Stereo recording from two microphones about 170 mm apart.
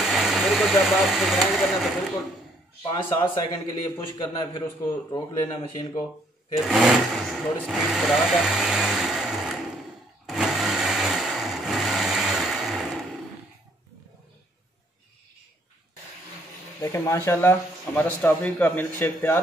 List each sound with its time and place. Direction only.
0.0 s speech: centre (ahead or behind)
2.8 s a man's voice: 30° left (ahead or behind)
6.7 s speech: centre (ahead or behind)
10.2 s sewing machine: centre (ahead or behind)
16.8 s speech: 15° left (ahead or behind)